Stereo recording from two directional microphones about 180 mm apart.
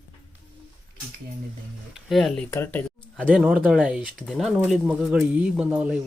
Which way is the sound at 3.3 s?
5° right (ahead or behind).